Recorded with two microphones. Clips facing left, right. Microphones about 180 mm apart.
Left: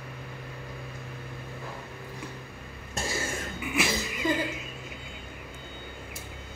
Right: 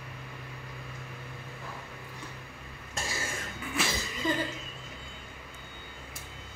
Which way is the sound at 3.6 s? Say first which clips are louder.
Left 4 dB; 10° left (ahead or behind).